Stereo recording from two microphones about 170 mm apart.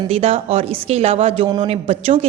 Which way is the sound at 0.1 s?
35° right (ahead or behind).